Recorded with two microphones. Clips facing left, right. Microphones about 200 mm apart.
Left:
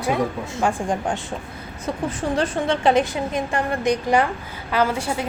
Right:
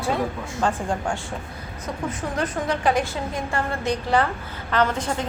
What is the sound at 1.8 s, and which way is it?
A woman's voice, 30° left (ahead or behind).